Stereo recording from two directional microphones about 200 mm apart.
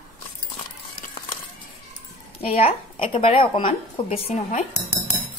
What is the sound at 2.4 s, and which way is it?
A woman's voice, 30° left (ahead or behind).